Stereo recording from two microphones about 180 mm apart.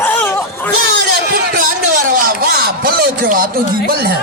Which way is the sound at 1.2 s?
50° right (ahead or behind).